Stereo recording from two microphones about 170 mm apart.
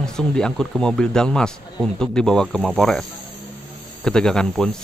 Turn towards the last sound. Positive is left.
turn(degrees=5)  # may be behind; listen again after turning